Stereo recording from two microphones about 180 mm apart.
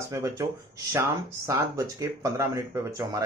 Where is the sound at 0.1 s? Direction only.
15° right (ahead or behind).